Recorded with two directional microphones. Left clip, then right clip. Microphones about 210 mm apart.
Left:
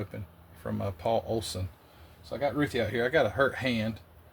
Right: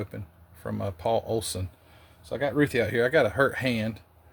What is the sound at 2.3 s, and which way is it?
Speech, 40° right (ahead or behind).